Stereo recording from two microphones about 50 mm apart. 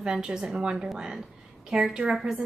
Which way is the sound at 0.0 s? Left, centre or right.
Centre.